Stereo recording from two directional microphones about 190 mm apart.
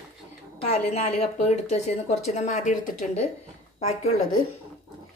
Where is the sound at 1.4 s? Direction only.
35° left (ahead or behind).